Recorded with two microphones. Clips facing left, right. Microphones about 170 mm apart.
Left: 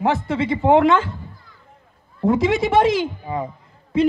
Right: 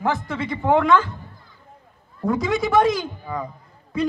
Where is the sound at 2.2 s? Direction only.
25° left (ahead or behind).